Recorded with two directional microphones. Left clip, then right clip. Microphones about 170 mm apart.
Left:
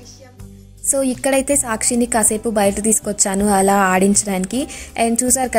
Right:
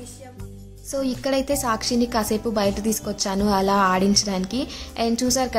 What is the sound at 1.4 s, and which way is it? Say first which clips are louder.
A woman's voice: left 4 dB; 25° left (ahead or behind).